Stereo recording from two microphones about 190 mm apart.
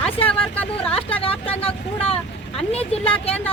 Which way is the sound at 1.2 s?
30° left (ahead or behind).